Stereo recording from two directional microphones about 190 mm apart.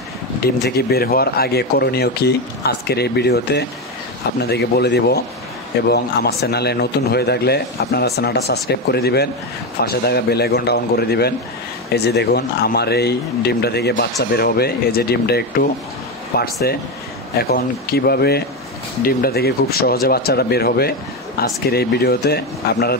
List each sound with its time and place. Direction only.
0.7 s speech: 55° left (ahead or behind)